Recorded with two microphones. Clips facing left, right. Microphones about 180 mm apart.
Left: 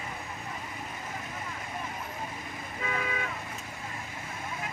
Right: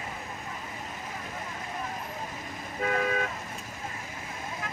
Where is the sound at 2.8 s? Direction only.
45° right (ahead or behind).